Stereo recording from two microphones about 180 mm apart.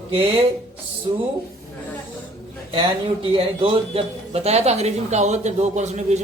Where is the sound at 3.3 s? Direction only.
30° right (ahead or behind).